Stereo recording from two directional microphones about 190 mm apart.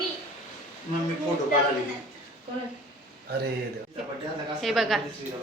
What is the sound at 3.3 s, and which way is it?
Speech, 55° right (ahead or behind).